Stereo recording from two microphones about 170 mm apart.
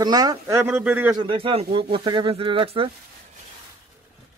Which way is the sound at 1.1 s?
30° right (ahead or behind).